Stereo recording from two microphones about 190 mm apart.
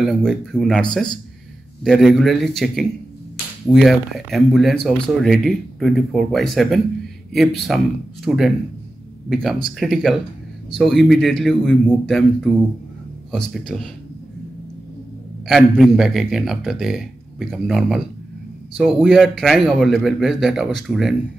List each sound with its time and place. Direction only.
0.0 s speech: 5° left (ahead or behind)
13.5 s speech: centre (ahead or behind)
15.4 s speech: centre (ahead or behind)
19.0 s speech: centre (ahead or behind)